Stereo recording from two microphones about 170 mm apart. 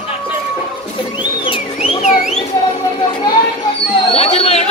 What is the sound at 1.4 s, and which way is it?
Car alarm, 30° left (ahead or behind).